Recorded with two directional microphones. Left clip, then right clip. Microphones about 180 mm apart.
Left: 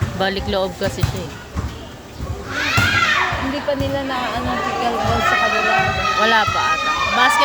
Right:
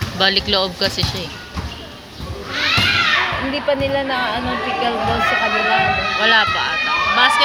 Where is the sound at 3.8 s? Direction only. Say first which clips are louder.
Right 3 dB; 30° right (ahead or behind).